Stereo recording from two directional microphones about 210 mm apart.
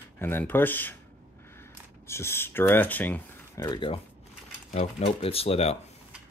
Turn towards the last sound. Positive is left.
turn(degrees=30)  # may be behind; listen again after turning